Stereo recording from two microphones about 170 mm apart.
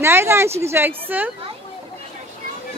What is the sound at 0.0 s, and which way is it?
Speech, 15° right (ahead or behind).